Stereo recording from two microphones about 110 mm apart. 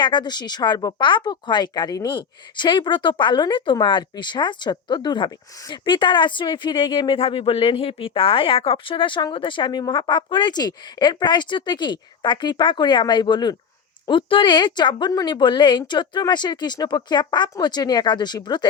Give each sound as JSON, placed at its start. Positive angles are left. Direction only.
{"t": 0.0, "sound": "a woman's voice", "side_deg": 45}